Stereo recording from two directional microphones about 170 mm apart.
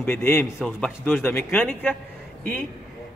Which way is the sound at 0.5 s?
5° left (ahead or behind).